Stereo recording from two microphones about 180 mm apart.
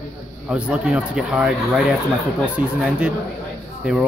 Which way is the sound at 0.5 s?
5° right (ahead or behind).